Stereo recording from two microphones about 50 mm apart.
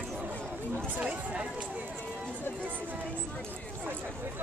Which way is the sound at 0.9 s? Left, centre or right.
Right.